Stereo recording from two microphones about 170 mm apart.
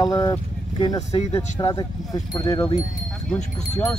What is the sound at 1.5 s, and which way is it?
Speech, 25° left (ahead or behind).